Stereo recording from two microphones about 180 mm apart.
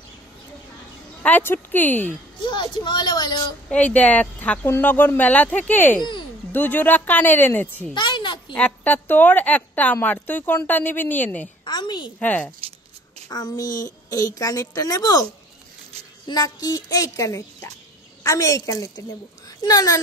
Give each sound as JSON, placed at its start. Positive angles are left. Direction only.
{"t": 1.2, "sound": "a woman's voice", "side_deg": 10}
{"t": 2.4, "sound": "a woman's voice", "side_deg": 25}
{"t": 3.7, "sound": "a woman's voice", "side_deg": 5}
{"t": 7.9, "sound": "a sound", "side_deg": 25}
{"t": 8.5, "sound": "a woman's voice", "side_deg": 10}
{"t": 11.6, "sound": "a woman's voice", "side_deg": 25}
{"t": 12.2, "sound": "a woman's voice", "side_deg": 10}
{"t": 13.3, "sound": "a woman's voice", "side_deg": 20}
{"t": 13.7, "sound": "speech", "side_deg": 45}
{"t": 14.1, "sound": "a woman's voice", "side_deg": 20}
{"t": 16.3, "sound": "a woman's voice", "side_deg": 20}